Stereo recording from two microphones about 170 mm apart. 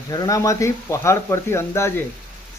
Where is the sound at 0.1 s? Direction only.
20° left (ahead or behind).